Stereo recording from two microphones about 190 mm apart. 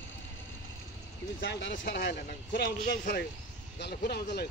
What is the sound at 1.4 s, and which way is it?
Speech, 70° left (ahead or behind).